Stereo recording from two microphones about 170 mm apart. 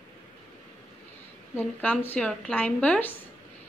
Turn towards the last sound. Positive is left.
turn(degrees=5)  # may be behind; listen again after turning